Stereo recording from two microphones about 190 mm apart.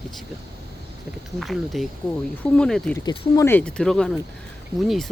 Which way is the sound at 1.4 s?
Centre (ahead or behind).